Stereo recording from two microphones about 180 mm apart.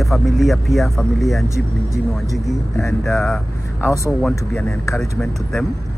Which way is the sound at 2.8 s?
Centre (ahead or behind).